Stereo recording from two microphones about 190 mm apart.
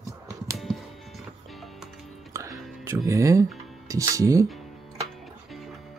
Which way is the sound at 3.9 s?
15° right (ahead or behind).